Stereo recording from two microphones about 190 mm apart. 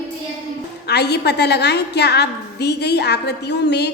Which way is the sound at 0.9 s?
60° left (ahead or behind).